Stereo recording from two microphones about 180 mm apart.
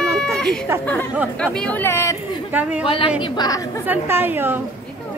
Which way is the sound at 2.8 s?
30° left (ahead or behind).